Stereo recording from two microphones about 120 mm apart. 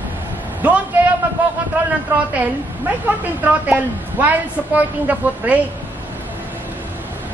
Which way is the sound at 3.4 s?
15° right (ahead or behind).